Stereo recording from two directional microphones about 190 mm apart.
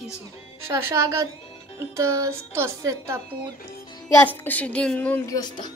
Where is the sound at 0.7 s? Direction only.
15° right (ahead or behind).